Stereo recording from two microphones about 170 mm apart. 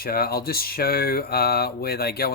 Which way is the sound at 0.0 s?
65° left (ahead or behind).